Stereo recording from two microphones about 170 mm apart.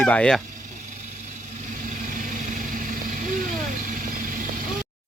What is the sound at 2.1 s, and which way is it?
Vehicle, 50° right (ahead or behind).